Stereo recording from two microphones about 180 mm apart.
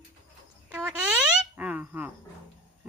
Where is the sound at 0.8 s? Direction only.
10° right (ahead or behind).